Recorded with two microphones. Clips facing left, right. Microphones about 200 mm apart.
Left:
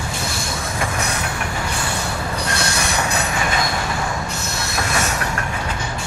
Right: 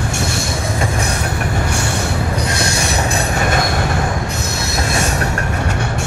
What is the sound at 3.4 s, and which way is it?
Train, 50° right (ahead or behind).